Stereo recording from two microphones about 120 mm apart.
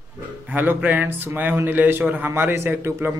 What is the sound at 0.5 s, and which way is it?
A man's voice, 15° right (ahead or behind).